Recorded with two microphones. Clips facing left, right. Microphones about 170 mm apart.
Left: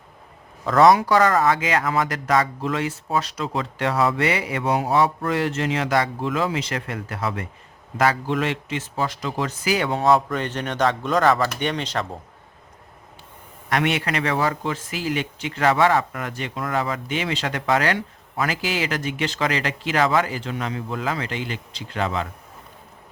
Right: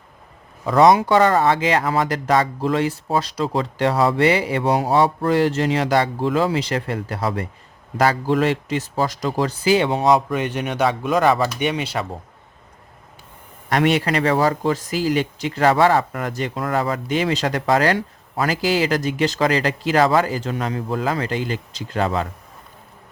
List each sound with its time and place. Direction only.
0.6 s speech: 15° right (ahead or behind)
13.7 s speech: 35° right (ahead or behind)